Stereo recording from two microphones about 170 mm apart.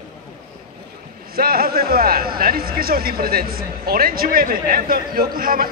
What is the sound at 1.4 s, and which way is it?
Speech, 60° right (ahead or behind).